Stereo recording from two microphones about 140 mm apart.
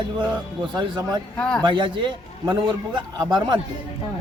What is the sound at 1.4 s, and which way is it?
Speech, 5° left (ahead or behind).